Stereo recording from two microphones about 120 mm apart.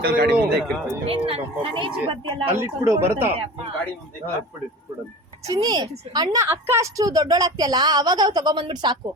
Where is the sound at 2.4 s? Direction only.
20° right (ahead or behind).